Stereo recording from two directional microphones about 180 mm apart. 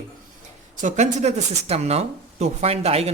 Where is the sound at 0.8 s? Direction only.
40° right (ahead or behind).